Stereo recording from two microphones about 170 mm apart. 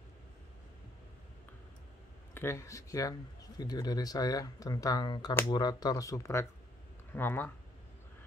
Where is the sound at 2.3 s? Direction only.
15° left (ahead or behind).